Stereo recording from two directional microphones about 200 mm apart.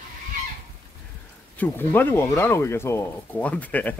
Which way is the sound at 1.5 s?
10° left (ahead or behind).